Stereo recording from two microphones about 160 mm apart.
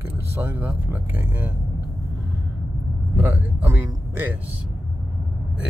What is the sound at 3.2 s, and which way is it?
Speech, 10° right (ahead or behind).